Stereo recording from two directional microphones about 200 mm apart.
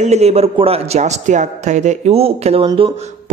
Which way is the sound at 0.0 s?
30° right (ahead or behind).